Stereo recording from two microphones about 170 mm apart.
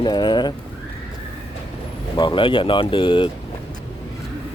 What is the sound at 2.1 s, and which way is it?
Speech, 30° left (ahead or behind).